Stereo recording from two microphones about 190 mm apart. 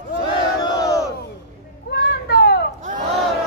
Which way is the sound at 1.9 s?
65° left (ahead or behind).